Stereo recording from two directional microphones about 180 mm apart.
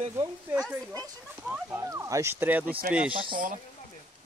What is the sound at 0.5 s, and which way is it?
Speech, 5° left (ahead or behind).